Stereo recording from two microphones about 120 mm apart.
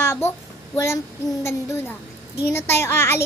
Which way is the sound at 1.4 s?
20° left (ahead or behind).